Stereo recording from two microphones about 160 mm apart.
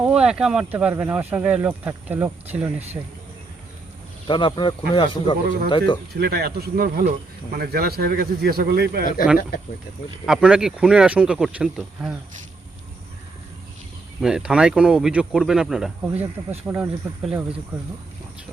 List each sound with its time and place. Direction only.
0.0 s speech: 5° right (ahead or behind)
4.3 s speech: 30° left (ahead or behind)
6.1 s speech: 80° right
10.2 s speech: 5° right (ahead or behind)
14.2 s speech: 5° right (ahead or behind)